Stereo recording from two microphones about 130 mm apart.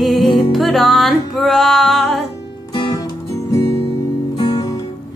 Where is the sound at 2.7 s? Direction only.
35° left (ahead or behind).